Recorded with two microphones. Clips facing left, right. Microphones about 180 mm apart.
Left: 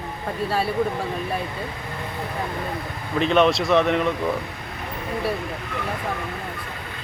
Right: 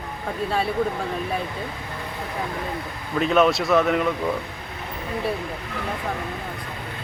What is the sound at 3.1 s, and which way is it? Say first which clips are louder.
Speech: even; 5° right (ahead or behind).